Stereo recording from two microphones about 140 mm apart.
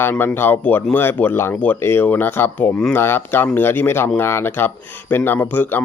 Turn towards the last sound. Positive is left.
turn(degrees=15)  # may be behind; listen again after turning